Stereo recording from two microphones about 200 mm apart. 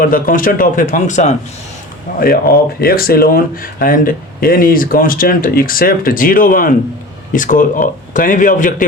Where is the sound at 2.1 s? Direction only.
45° left (ahead or behind).